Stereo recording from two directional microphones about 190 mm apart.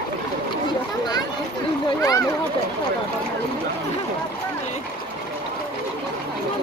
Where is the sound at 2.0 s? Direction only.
15° left (ahead or behind).